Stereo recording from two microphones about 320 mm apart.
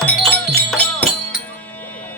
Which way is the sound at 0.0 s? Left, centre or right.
Centre.